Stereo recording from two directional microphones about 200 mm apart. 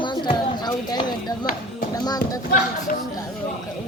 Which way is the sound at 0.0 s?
25° left (ahead or behind).